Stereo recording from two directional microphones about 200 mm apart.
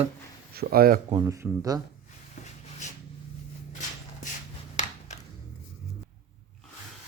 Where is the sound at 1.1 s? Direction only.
15° right (ahead or behind).